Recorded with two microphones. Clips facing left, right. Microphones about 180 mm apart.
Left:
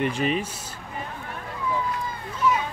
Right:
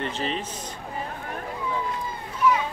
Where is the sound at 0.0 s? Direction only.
10° left (ahead or behind).